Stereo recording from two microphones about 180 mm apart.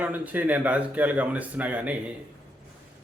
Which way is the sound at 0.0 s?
10° right (ahead or behind).